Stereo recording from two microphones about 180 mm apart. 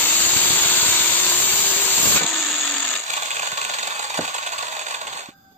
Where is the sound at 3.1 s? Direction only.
40° right (ahead or behind).